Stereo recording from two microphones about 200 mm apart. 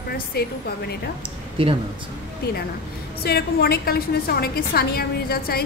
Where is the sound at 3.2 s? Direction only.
50° left (ahead or behind).